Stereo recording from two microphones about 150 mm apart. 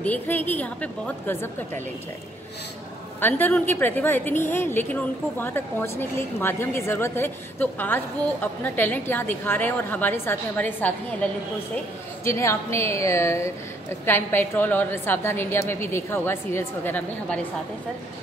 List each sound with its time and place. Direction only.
0.0 s a woman's voice: 10° left (ahead or behind)
3.2 s a woman's voice: 15° left (ahead or behind)
12.3 s a woman's voice: 20° left (ahead or behind)